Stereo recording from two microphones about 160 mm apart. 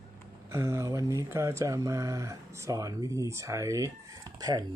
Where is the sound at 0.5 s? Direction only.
15° right (ahead or behind).